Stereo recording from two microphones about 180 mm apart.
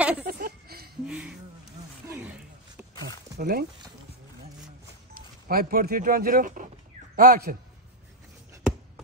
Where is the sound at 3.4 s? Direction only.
55° right (ahead or behind).